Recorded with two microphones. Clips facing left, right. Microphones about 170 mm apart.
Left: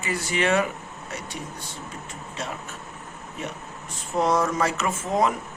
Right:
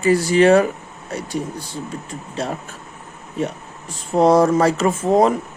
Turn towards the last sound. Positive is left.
turn(degrees=-35)  # may be behind; listen again after turning